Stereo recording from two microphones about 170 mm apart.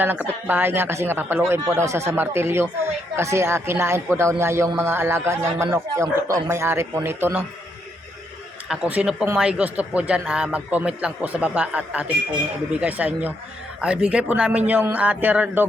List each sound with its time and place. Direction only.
0.0 s speech: 10° right (ahead or behind)
8.7 s speech: 5° right (ahead or behind)